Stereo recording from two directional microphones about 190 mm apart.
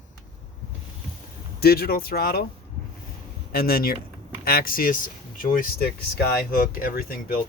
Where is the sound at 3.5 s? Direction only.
50° left (ahead or behind).